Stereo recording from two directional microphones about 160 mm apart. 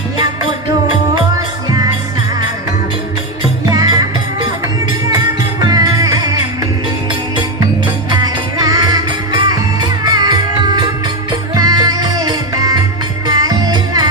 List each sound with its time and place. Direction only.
3.6 s music: 25° right (ahead or behind)
5.1 s music: 20° right (ahead or behind)
7.6 s music: 25° right (ahead or behind)